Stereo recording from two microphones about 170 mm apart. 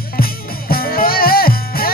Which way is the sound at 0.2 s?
60° left (ahead or behind).